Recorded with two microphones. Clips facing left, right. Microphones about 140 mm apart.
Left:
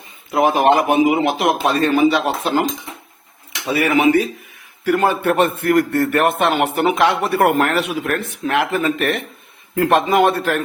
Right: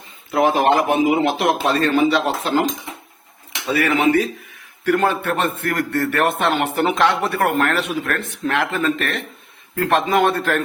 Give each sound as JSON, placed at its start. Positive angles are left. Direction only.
{"t": 0.3, "sound": "a man's voice", "side_deg": 15}
{"t": 3.7, "sound": "a man's voice", "side_deg": 10}